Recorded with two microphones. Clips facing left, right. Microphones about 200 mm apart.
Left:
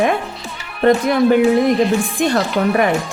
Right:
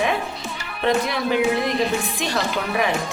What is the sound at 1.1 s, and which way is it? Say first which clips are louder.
A woman's voice: left 8 dB; 50° left (ahead or behind).